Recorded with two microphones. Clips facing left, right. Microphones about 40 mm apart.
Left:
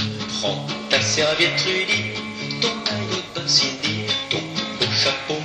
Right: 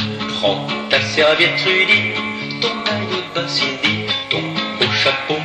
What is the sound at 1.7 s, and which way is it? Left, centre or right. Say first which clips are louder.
Music: right 8 dB; right.